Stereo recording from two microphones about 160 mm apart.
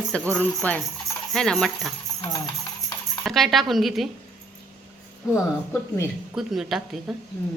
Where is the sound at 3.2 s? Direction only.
Centre (ahead or behind).